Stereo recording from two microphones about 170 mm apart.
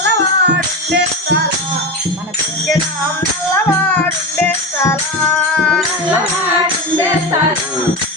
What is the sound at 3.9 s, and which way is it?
Music, 10° left (ahead or behind).